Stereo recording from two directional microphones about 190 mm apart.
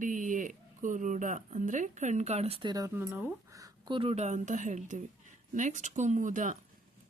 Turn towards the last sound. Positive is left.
turn(degrees=-40)  # may be behind; listen again after turning